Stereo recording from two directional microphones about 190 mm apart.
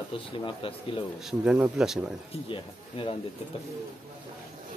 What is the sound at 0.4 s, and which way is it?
Speech, 25° left (ahead or behind).